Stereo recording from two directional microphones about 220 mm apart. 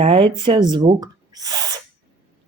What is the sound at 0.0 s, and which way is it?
Speech, 25° right (ahead or behind).